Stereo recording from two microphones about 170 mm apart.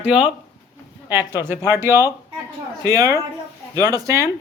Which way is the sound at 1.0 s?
10° right (ahead or behind).